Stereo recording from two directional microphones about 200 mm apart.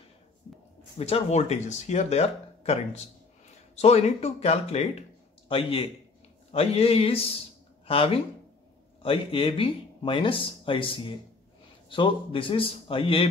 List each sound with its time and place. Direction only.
0.9 s speech: 30° left (ahead or behind)